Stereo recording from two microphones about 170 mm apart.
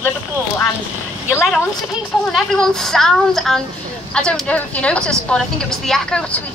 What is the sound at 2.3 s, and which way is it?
A woman's voice, centre (ahead or behind).